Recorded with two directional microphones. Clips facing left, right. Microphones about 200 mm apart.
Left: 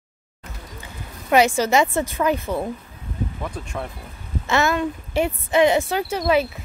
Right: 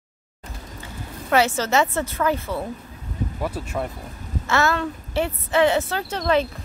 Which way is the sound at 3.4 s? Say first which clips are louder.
Right 3 dB; 5° right (ahead or behind).